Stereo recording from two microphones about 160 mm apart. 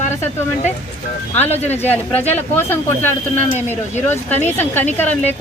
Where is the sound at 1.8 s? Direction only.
10° left (ahead or behind).